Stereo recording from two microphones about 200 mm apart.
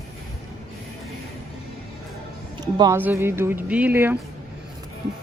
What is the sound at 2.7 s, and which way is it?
Speech, 15° right (ahead or behind).